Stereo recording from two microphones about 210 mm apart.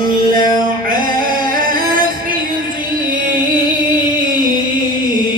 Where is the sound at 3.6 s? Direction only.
40° right (ahead or behind).